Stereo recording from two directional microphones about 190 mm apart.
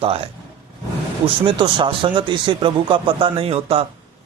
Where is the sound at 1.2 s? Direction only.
25° right (ahead or behind).